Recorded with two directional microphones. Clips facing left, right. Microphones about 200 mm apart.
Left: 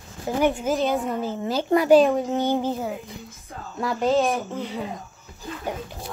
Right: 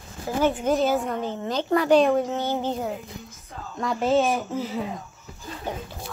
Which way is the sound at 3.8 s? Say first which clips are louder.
Even; centre (ahead or behind).